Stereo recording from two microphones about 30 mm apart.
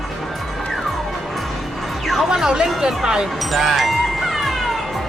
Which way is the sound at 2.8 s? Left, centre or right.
Right.